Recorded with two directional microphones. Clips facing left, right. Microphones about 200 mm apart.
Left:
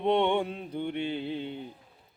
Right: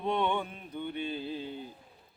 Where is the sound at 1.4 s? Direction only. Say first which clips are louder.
Left 3 dB; 70° left (ahead or behind).